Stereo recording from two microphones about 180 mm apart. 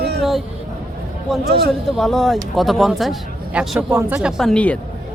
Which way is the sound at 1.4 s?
60° right (ahead or behind).